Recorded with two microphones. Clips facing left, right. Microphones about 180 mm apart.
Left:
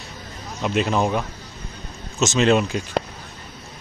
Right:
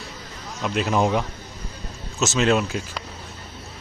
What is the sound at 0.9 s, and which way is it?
Speech, 15° right (ahead or behind).